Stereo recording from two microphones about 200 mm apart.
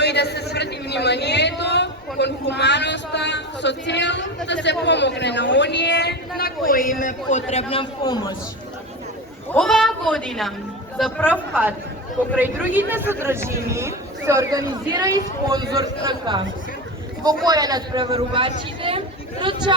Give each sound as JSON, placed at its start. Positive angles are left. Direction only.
{"t": 0.0, "sound": "a man's voice", "side_deg": 55}
{"t": 9.6, "sound": "a woman's voice", "side_deg": 0}
{"t": 12.4, "sound": "a man's voice", "side_deg": -10}